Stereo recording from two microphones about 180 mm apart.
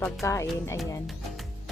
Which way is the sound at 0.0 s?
15° left (ahead or behind).